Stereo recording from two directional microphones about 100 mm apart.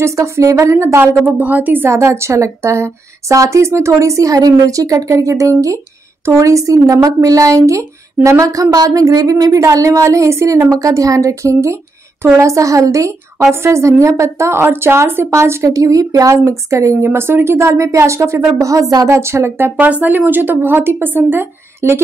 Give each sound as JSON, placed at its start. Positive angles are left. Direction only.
{"t": 0.0, "sound": "a woman's voice", "side_deg": -30}